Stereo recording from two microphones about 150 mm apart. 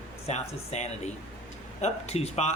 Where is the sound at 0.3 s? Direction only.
50° left (ahead or behind).